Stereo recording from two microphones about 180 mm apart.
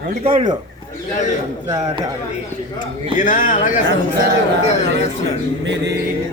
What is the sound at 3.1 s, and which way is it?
Speech, 45° left (ahead or behind).